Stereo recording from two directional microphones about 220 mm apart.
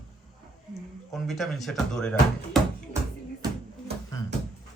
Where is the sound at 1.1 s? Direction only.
Centre (ahead or behind).